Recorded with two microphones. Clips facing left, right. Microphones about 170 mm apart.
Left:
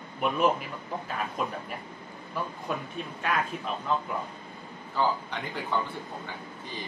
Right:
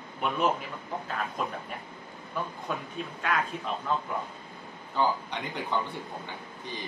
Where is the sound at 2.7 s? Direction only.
5° left (ahead or behind).